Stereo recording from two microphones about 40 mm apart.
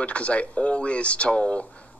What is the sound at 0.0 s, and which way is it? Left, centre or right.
Speech, left.